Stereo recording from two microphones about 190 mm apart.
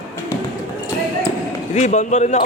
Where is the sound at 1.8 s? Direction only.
35° left (ahead or behind).